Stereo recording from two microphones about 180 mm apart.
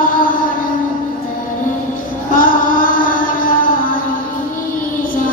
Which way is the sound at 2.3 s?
50° left (ahead or behind).